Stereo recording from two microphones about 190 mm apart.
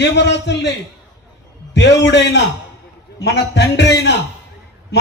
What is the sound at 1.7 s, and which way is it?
A man's voice, 65° left (ahead or behind).